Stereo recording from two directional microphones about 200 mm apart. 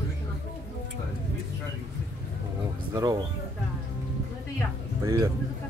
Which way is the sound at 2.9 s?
20° right (ahead or behind).